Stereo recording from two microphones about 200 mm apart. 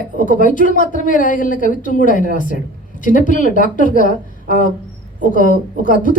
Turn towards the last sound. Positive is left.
turn(degrees=40)  # may be behind; listen again after turning